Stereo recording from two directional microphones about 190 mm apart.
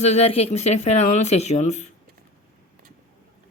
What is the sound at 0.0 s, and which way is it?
Speech, 35° left (ahead or behind).